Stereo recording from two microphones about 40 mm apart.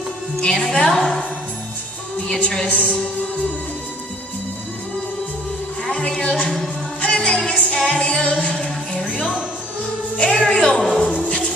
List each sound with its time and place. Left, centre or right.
0.4 s music: centre
2.2 s a woman's voice: centre
2.7 s speech: left
5.9 s speech: left
7.1 s music: left
9.0 s speech: centre
10.1 s music: left
10.4 s music: centre
11.1 s music: left